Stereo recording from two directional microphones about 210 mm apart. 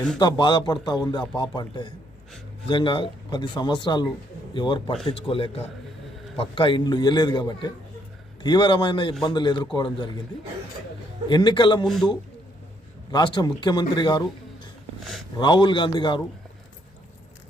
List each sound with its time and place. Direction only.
0.2 s speech: 20° left (ahead or behind)
13.1 s a man's voice: 20° left (ahead or behind)